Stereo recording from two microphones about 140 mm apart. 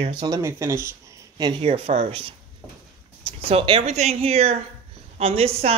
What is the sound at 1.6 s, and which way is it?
Speech, 45° right (ahead or behind).